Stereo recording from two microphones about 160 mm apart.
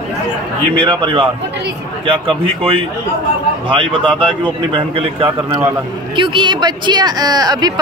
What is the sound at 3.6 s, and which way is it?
A man's voice, 35° right (ahead or behind).